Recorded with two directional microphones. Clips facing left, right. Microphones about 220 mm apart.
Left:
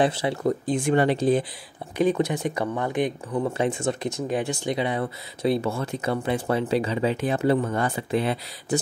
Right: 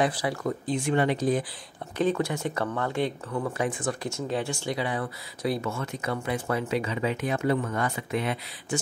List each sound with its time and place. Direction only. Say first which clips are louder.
0.0 s speech: left 4 dB; 25° left (ahead or behind)
0.4 s speech: left 5 dB; 45° left (ahead or behind)
1.0 s speech: left 4 dB; 30° left (ahead or behind)
2.0 s speech: left 4 dB; 15° left (ahead or behind); by 8.7 s 30° left (ahead or behind)